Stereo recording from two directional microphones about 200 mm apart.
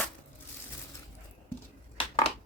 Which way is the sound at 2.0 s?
30° left (ahead or behind).